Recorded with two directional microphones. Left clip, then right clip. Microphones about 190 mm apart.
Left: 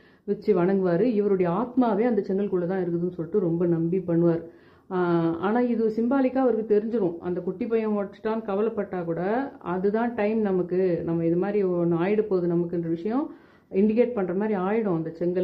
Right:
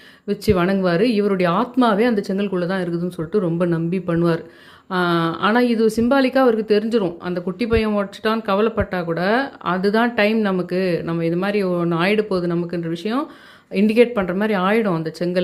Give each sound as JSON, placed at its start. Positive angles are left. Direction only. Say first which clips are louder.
{"t": 0.3, "sound": "speech", "louder": "right 4 dB", "side_deg": -20}